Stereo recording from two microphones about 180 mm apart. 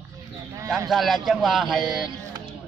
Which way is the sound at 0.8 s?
Centre (ahead or behind).